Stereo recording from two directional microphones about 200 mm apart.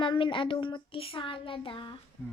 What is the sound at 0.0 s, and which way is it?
A woman's voice, 25° left (ahead or behind).